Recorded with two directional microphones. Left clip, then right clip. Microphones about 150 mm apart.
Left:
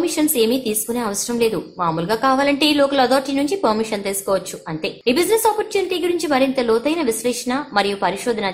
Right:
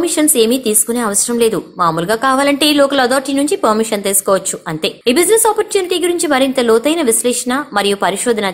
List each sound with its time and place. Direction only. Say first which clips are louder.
0.0 s a woman's voice: right 5 dB; 20° right (ahead or behind)